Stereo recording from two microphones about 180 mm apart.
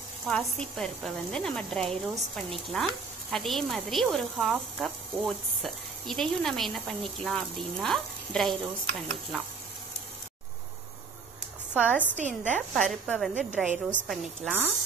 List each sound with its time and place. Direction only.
0.3 s speech: centre (ahead or behind)
11.7 s a woman's voice: 5° right (ahead or behind)
12.2 s a woman's voice: 40° right (ahead or behind)
12.5 s speech: 5° left (ahead or behind)